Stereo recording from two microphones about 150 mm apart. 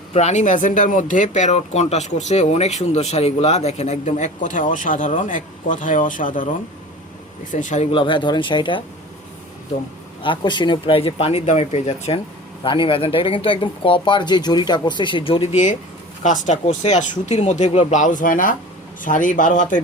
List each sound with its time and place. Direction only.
0.1 s speech: 45° left (ahead or behind)
7.9 s speech: 35° left (ahead or behind)
10.2 s speech: 30° left (ahead or behind)
12.6 s speech: 35° left (ahead or behind)
16.2 s speech: 60° left (ahead or behind)